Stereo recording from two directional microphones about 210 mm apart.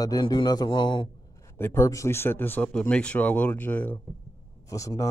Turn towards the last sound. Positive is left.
turn(degrees=15)  # may be behind; listen again after turning